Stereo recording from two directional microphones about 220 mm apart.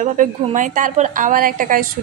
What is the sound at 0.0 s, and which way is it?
A woman's voice, 35° right (ahead or behind).